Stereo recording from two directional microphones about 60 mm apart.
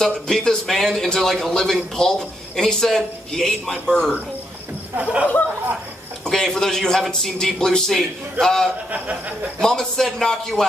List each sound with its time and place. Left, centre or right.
0.0 s a man's voice: centre
4.9 s speech: right
6.2 s a man's voice: centre
8.9 s speech: right
9.6 s a man's voice: centre